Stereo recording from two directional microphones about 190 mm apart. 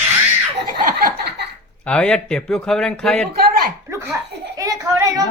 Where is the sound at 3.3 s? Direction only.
50° right (ahead or behind).